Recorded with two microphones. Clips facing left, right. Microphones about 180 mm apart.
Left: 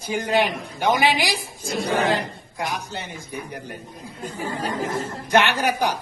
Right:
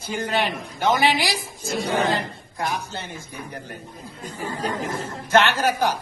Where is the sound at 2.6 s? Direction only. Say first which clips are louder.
Right 1 dB; 15° left (ahead or behind).